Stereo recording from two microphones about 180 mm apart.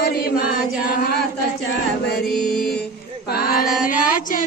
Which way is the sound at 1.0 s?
65° left (ahead or behind).